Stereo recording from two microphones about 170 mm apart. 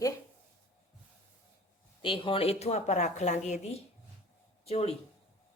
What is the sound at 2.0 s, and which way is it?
Speech, 30° left (ahead or behind).